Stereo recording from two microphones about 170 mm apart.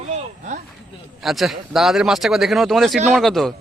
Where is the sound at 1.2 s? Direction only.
Centre (ahead or behind).